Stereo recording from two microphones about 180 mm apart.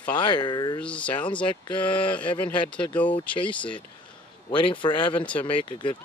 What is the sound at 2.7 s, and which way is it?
Speech, 10° left (ahead or behind).